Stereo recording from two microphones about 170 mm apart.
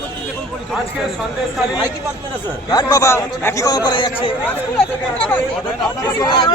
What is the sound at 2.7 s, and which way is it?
A man's voice, 20° left (ahead or behind).